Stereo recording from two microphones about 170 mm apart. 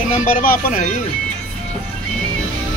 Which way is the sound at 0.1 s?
50° left (ahead or behind).